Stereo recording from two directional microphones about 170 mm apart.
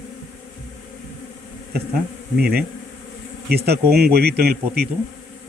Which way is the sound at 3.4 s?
70° right (ahead or behind).